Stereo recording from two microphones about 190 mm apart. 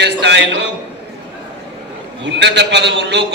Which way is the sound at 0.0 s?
65° right (ahead or behind).